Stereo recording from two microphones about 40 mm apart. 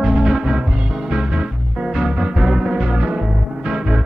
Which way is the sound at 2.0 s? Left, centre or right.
Centre.